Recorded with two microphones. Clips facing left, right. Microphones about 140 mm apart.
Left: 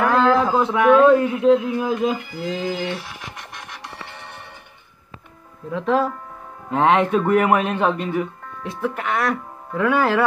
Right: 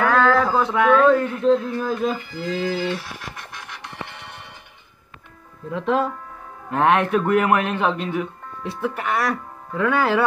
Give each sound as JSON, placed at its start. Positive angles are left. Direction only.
{"t": 0.0, "sound": "a sound", "side_deg": 15}
{"t": 0.6, "sound": "speech", "side_deg": 0}
{"t": 0.8, "sound": "music", "side_deg": 10}
{"t": 5.7, "sound": "speech", "side_deg": 0}
{"t": 6.7, "sound": "music", "side_deg": 15}
{"t": 8.6, "sound": "speech", "side_deg": -10}
{"t": 9.7, "sound": "music", "side_deg": 5}